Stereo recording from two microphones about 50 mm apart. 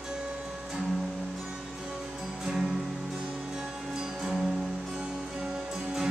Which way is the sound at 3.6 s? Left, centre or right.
Centre.